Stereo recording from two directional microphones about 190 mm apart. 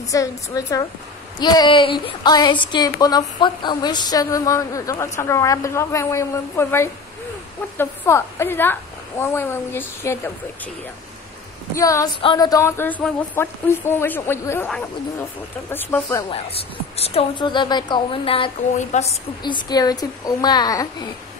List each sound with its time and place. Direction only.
0.1 s a woman's voice: 20° left (ahead or behind)
11.7 s a woman's voice: 15° left (ahead or behind)
15.7 s a woman's voice: 10° left (ahead or behind)
17.0 s a woman's voice: 30° left (ahead or behind)
19.4 s a woman's voice: 20° left (ahead or behind)